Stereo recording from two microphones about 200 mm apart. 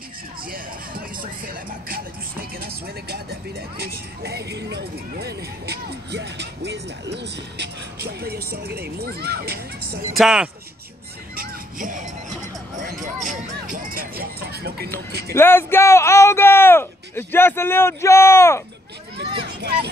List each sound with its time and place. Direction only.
0.5 s speech: 45° right (ahead or behind)
10.1 s speech: 5° right (ahead or behind)
11.3 s music: 40° right (ahead or behind)
15.3 s speech: 10° left (ahead or behind)
19.4 s children playing: 55° right (ahead or behind)